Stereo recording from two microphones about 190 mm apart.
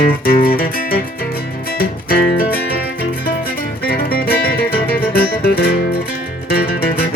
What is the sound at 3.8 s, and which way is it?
Music, 55° left (ahead or behind).